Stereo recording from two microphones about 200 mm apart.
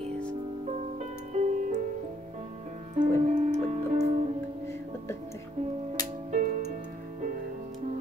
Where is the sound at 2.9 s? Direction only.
35° right (ahead or behind).